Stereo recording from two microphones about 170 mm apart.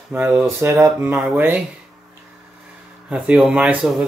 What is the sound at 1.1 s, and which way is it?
Speech, 5° right (ahead or behind).